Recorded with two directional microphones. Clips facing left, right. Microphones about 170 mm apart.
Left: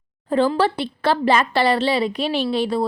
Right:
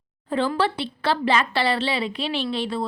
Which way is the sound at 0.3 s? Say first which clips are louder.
Left 5 dB; 40° left (ahead or behind).